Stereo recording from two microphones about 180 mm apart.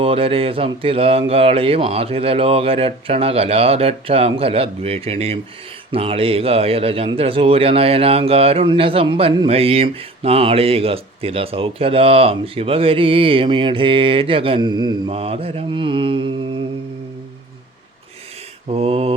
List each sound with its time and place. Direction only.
0.0 s a man's voice: 30° right (ahead or behind)
18.7 s a man's voice: 35° right (ahead or behind)